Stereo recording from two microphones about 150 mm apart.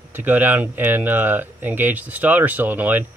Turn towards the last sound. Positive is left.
turn(degrees=-10)  # may be behind; listen again after turning